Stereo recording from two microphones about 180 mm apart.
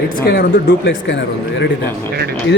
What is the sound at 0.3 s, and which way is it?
Speech, 55° left (ahead or behind).